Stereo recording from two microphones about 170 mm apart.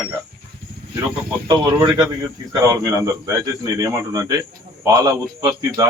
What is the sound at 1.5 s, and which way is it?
A man's voice, 25° right (ahead or behind).